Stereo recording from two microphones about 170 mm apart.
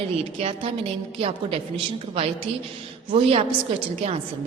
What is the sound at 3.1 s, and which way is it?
A woman's voice, 35° right (ahead or behind).